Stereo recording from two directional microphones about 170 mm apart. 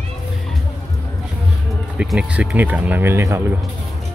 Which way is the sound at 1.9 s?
5° right (ahead or behind).